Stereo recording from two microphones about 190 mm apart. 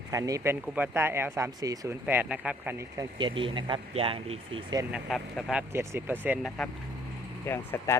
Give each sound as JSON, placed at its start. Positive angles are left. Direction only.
{"t": 0.1, "sound": "speech", "side_deg": -15}
{"t": 3.2, "sound": "speech", "side_deg": -25}
{"t": 4.9, "sound": "speech", "side_deg": 0}
{"t": 7.4, "sound": "speech", "side_deg": 15}